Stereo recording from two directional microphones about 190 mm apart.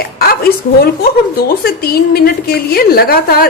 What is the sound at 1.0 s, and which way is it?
A woman's voice, 55° left (ahead or behind).